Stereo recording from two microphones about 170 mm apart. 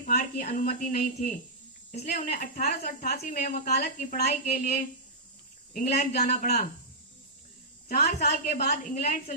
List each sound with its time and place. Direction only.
0.0 s a woman's voice: 55° left (ahead or behind)
1.9 s a woman's voice: 45° left (ahead or behind)
7.9 s a woman's voice: 55° left (ahead or behind)
9.0 s a woman's voice: 50° left (ahead or behind)